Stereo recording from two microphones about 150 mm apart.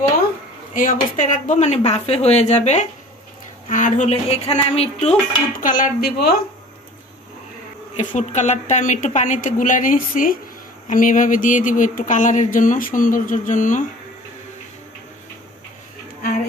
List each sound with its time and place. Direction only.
0.7 s speech: 60° left (ahead or behind); by 5.1 s 40° left (ahead or behind)
5.6 s dishes: 60° left (ahead or behind); by 6.3 s 90° left
7.9 s a sound: 50° left (ahead or behind)